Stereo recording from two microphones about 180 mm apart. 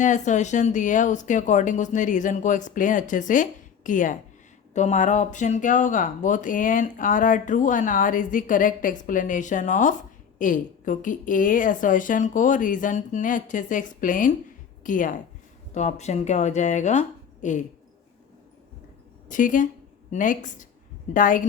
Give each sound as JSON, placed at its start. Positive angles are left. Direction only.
{"t": 0.0, "sound": "speech", "side_deg": 45}
{"t": 19.3, "sound": "speech", "side_deg": 45}